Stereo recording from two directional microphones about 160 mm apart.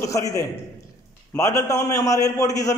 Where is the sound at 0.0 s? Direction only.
20° left (ahead or behind).